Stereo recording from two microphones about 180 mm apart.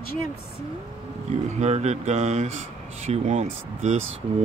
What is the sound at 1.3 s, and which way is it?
Speech, 40° right (ahead or behind).